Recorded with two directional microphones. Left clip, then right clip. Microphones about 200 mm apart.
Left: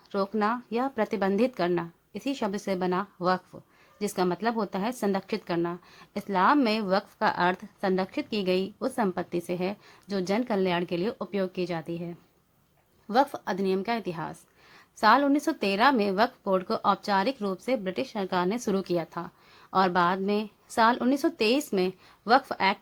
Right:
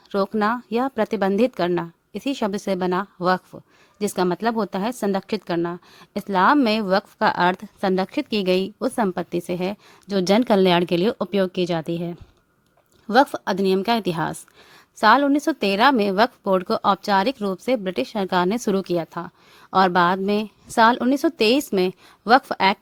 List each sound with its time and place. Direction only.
0.1 s a woman's voice: 40° right (ahead or behind)